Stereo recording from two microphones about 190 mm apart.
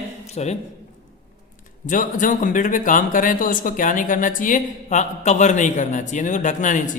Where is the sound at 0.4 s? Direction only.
35° left (ahead or behind).